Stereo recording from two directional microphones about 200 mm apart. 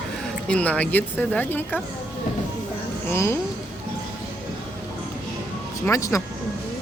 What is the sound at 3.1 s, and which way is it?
Speech, 10° left (ahead or behind).